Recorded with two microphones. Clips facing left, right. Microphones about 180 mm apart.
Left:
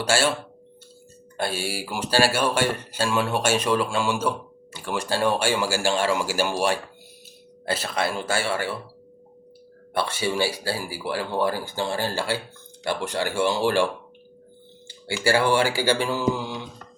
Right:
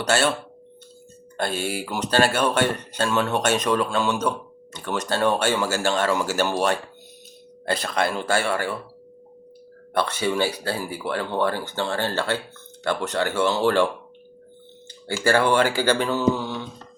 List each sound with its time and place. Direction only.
0.0 s speech: 10° left (ahead or behind)
1.4 s speech: 10° left (ahead or behind)
7.6 s speech: 5° left (ahead or behind)
10.0 s speech: 10° left (ahead or behind)
15.2 s speech: 10° left (ahead or behind)